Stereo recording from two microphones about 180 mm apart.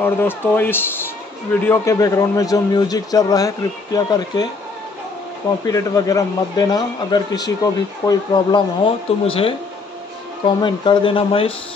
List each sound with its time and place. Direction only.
0.0 s a man's voice: 10° left (ahead or behind)
5.7 s a man's voice: 20° left (ahead or behind)